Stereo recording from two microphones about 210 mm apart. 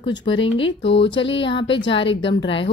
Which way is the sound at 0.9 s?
60° left (ahead or behind).